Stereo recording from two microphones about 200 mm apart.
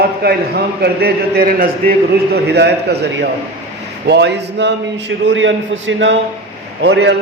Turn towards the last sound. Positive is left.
turn(degrees=-55)  # may be behind; listen again after turning